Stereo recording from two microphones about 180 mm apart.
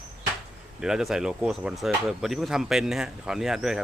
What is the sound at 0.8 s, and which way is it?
Speech, 5° right (ahead or behind).